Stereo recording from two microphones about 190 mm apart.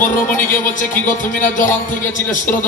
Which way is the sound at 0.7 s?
45° left (ahead or behind).